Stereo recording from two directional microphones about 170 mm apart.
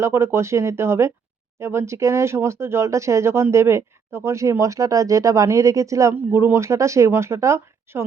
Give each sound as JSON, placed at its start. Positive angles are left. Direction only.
{"t": 0.0, "sound": "speech", "side_deg": -15}